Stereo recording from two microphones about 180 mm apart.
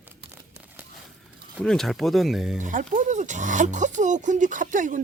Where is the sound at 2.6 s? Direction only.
45° right (ahead or behind).